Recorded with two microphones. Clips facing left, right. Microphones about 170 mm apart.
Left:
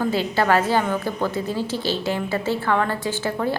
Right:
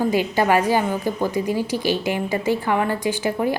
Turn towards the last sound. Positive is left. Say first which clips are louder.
# right 2 dB
turn(degrees=-15)  # may be behind; listen again after turning